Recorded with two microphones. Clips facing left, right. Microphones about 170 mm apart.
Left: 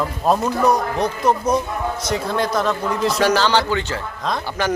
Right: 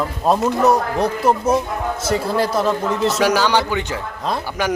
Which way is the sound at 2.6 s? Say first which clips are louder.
Right 2 dB; 5° right (ahead or behind).